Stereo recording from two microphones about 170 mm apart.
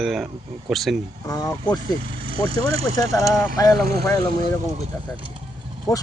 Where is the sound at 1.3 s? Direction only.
20° left (ahead or behind).